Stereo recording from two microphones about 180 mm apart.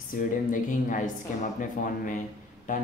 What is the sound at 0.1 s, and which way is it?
Speech, 45° left (ahead or behind).